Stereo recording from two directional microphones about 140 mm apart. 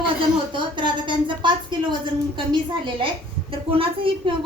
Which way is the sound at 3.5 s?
40° right (ahead or behind).